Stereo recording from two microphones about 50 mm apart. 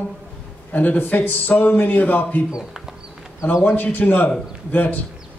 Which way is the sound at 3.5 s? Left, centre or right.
Left.